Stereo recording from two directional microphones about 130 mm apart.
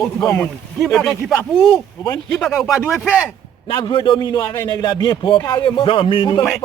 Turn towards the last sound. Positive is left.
turn(degrees=40)  # may be behind; listen again after turning